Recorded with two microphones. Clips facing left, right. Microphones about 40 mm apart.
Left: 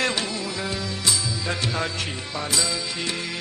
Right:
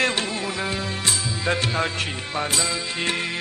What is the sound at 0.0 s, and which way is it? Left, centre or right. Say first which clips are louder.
Music: right 2 dB; right.